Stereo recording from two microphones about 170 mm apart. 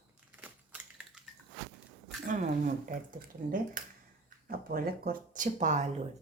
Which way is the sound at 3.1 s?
55° right (ahead or behind).